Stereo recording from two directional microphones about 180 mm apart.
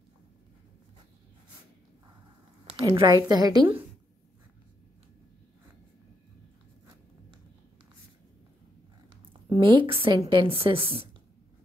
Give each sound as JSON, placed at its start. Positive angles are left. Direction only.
{"t": 2.7, "sound": "a woman's voice", "side_deg": -25}
{"t": 9.3, "sound": "a woman's voice", "side_deg": -30}